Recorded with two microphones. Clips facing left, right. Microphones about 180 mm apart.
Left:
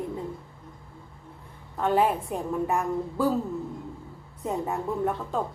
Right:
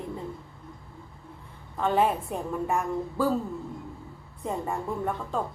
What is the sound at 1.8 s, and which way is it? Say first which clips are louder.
Speech: left 1 dB; centre (ahead or behind).